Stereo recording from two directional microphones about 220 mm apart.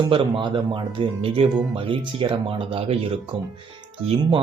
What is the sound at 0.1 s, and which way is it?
Speech, 20° right (ahead or behind).